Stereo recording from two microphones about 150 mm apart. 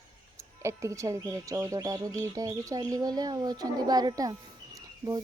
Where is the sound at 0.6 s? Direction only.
20° right (ahead or behind).